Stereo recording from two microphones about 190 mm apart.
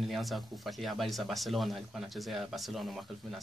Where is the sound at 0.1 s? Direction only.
Centre (ahead or behind).